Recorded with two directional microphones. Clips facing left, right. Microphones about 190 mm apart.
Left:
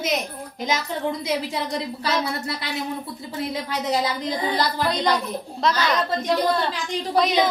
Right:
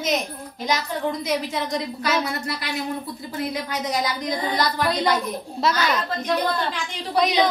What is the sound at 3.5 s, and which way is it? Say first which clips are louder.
A woman's voice: left 4 dB; 30° left (ahead or behind).